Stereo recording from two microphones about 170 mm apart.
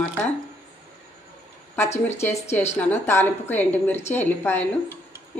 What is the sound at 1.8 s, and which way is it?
A woman's voice, 15° left (ahead or behind).